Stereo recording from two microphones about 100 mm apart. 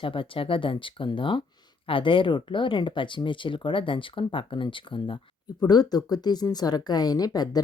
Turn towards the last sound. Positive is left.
turn(degrees=40)  # may be behind; listen again after turning